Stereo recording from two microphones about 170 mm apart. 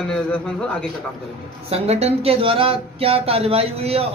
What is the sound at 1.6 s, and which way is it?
Speech, 35° right (ahead or behind).